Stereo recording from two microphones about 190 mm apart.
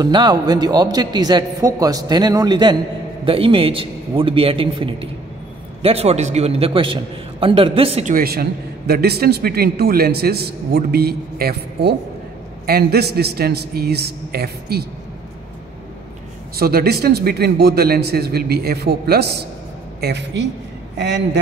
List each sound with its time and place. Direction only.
0.0 s a man's voice: 25° right (ahead or behind)
8.1 s a man's voice: 55° right (ahead or behind)
16.5 s a man's voice: 55° right (ahead or behind)